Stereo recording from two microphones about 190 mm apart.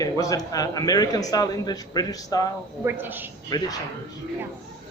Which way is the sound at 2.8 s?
10° right (ahead or behind).